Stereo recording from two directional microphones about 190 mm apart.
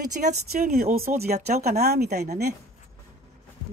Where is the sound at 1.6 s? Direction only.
55° right (ahead or behind).